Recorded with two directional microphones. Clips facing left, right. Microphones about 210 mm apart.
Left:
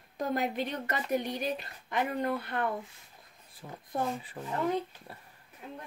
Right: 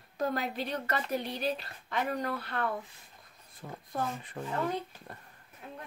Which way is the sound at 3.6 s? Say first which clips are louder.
Left 2 dB; 5° left (ahead or behind).